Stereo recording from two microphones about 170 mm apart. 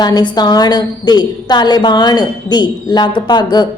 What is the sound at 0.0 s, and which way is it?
A woman's voice, 25° left (ahead or behind).